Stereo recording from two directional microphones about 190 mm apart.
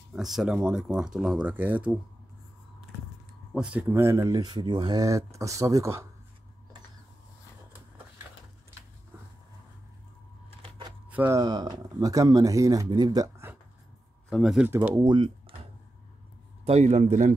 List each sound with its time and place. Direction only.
0.1 s speech: centre (ahead or behind)
3.5 s speech: 10° right (ahead or behind)
11.1 s speech: 10° right (ahead or behind)
14.3 s speech: centre (ahead or behind)
15.0 s speech: 25° right (ahead or behind)
16.6 s speech: 35° right (ahead or behind)